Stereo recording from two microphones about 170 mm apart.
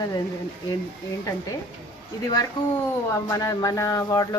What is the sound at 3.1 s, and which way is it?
A woman's voice, 20° left (ahead or behind).